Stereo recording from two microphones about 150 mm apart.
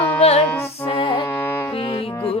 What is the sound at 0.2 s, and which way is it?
Music, 45° left (ahead or behind).